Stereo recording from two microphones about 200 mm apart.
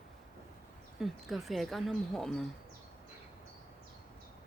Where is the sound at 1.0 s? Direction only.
Centre (ahead or behind).